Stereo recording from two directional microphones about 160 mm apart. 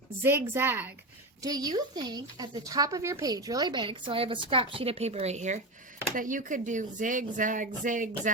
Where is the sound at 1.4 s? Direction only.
25° right (ahead or behind).